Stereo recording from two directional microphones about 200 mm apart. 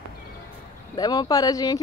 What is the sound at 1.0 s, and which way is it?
Speech, 20° left (ahead or behind).